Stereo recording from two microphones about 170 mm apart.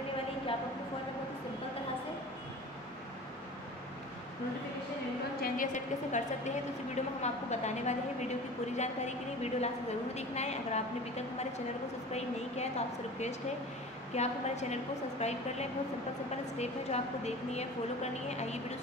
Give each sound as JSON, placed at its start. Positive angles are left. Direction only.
{"t": 5.4, "sound": "a woman's voice", "side_deg": 50}